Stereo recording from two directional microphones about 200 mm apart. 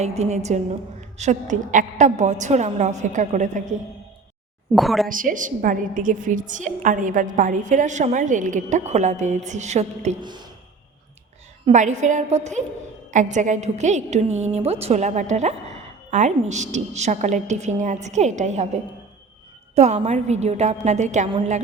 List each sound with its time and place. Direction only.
0.0 s a woman's voice: 35° right (ahead or behind)
4.7 s a woman's voice: centre (ahead or behind)
5.0 s a woman's voice: 40° right (ahead or behind)
10.2 s speech: 20° right (ahead or behind)
11.6 s a woman's voice: 35° right (ahead or behind)